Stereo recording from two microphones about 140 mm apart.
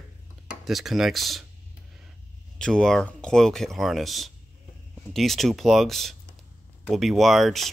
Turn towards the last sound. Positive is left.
turn(degrees=0)  # may be behind; listen again after turning